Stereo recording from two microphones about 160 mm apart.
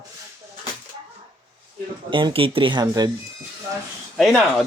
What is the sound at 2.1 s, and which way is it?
Speech, 30° right (ahead or behind).